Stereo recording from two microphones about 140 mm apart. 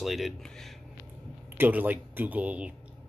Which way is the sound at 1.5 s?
10° right (ahead or behind).